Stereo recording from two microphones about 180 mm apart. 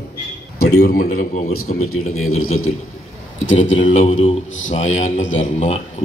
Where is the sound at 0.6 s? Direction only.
60° left (ahead or behind); by 2.1 s 45° left (ahead or behind).